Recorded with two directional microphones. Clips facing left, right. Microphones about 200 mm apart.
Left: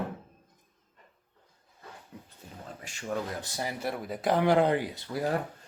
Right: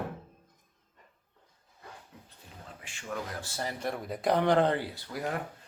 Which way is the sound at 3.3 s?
20° left (ahead or behind).